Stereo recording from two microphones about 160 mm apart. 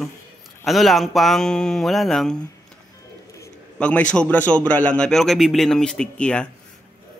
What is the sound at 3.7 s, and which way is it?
A man's voice, 10° left (ahead or behind).